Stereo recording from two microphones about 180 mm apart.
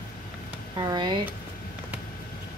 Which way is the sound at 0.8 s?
25° right (ahead or behind).